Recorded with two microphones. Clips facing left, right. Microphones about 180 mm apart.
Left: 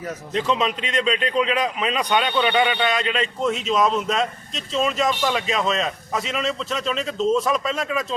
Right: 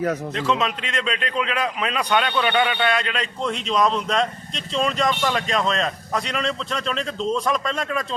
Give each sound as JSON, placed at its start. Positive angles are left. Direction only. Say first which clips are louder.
{"t": 0.3, "sound": "a man's voice", "louder": "left 1 dB", "side_deg": 0}